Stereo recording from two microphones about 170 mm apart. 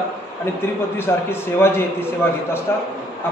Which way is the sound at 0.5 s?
15° left (ahead or behind).